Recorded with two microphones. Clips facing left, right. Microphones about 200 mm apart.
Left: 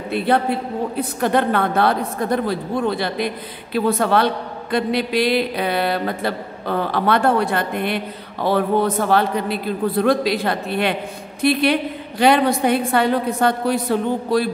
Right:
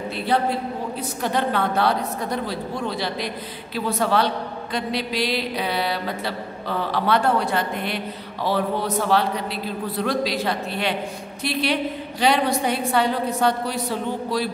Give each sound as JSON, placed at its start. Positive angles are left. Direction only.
{"t": 0.9, "sound": "a woman's voice", "side_deg": 55}